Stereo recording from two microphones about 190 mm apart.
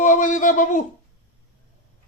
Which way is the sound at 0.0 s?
40° left (ahead or behind).